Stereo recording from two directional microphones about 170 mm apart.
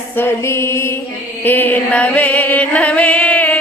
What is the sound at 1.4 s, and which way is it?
Music, 10° left (ahead or behind).